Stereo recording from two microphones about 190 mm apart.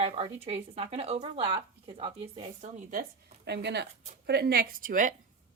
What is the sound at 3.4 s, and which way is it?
A woman's voice, 65° right (ahead or behind).